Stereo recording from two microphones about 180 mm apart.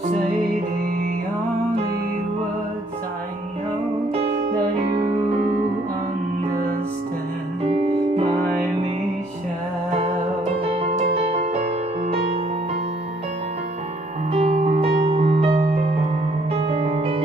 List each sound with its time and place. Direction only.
10.7 s music: 35° right (ahead or behind)
14.6 s music: 30° right (ahead or behind)